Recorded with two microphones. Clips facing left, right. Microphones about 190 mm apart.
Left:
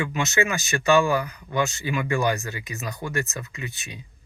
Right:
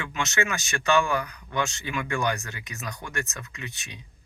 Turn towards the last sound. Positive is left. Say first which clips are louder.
# left 4 dB
turn(degrees=5)  # may be behind; listen again after turning